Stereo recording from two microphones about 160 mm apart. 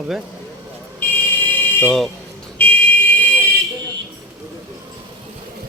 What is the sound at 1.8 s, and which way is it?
Speech, centre (ahead or behind).